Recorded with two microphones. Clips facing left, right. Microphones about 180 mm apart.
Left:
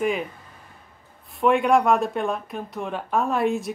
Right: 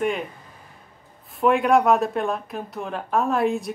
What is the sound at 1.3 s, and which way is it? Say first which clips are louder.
Speech: right 1 dB; centre (ahead or behind).